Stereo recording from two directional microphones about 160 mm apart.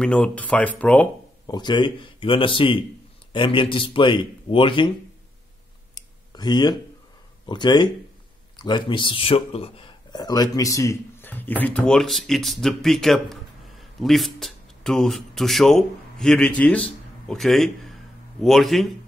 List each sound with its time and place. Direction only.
0.0 s speech: 5° left (ahead or behind)
1.5 s speech: 30° left (ahead or behind)
5.9 s a sound: 25° left (ahead or behind)
7.4 s a man's voice: 25° left (ahead or behind); by 18.9 s centre (ahead or behind)